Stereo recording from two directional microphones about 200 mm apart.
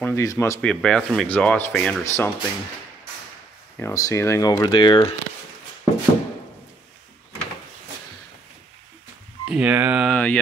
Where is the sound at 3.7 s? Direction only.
15° left (ahead or behind).